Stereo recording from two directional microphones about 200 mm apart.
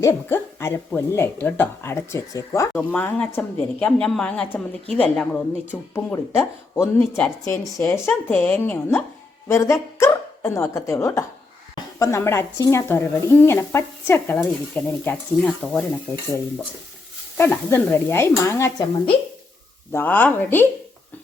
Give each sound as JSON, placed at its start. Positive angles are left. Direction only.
{"t": 0.0, "sound": "a woman's voice", "side_deg": 10}
{"t": 17.3, "sound": "speech", "side_deg": 10}
{"t": 19.9, "sound": "speech", "side_deg": 10}